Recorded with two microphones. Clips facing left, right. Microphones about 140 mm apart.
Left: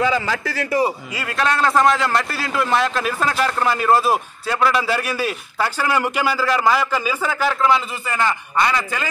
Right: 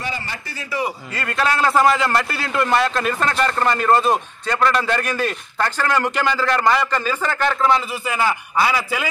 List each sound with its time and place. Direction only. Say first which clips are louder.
0.3 s a man's voice: left 9 dB; 90° left
1.1 s a man's voice: even; centre (ahead or behind)